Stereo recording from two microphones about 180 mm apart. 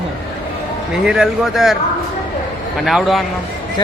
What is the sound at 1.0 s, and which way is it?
Speech, 5° right (ahead or behind).